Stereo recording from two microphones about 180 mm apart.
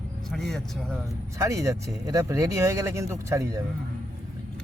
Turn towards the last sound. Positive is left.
turn(degrees=-20)  # may be behind; listen again after turning